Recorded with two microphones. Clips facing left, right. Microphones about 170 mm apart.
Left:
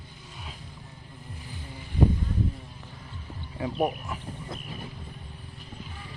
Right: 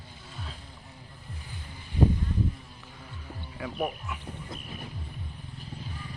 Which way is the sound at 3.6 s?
35° left (ahead or behind).